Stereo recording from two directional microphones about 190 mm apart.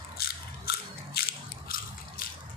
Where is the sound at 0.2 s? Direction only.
55° left (ahead or behind).